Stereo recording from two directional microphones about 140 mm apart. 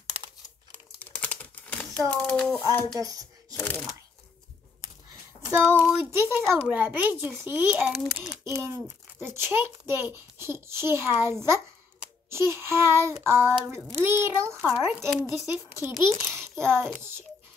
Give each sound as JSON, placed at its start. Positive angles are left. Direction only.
{"t": 0.0, "sound": "crumpling", "side_deg": -45}
{"t": 0.9, "sound": "typing", "side_deg": 10}
{"t": 2.9, "sound": "speech", "side_deg": -25}
{"t": 3.5, "sound": "speech", "side_deg": 15}
{"t": 5.4, "sound": "a child's voice", "side_deg": -15}
{"t": 8.5, "sound": "a child's voice", "side_deg": -20}
{"t": 15.0, "sound": "speech", "side_deg": 0}
{"t": 15.5, "sound": "a child's voice", "side_deg": -15}